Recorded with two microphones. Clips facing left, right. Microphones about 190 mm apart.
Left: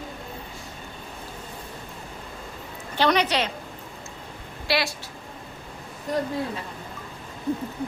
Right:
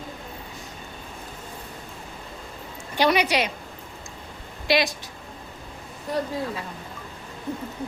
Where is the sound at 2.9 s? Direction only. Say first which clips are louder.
Right 1 dB; 10° right (ahead or behind).